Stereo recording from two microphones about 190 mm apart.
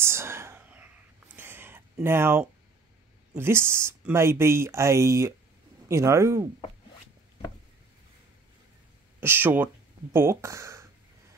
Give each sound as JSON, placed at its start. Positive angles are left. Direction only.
{"t": 0.0, "sound": "whispering", "side_deg": -15}
{"t": 1.3, "sound": "a sound", "side_deg": -10}
{"t": 3.3, "sound": "speech", "side_deg": -10}
{"t": 9.2, "sound": "speech", "side_deg": -10}